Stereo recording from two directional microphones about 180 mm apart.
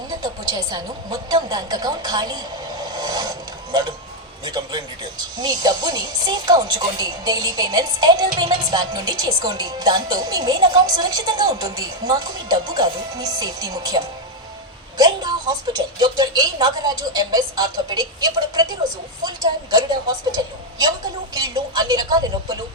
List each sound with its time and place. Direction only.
0.2 s speech: 20° right (ahead or behind)
2.8 s a sound: 20° right (ahead or behind)
4.4 s speech: 20° right (ahead or behind)
21.3 s speech: 20° right (ahead or behind)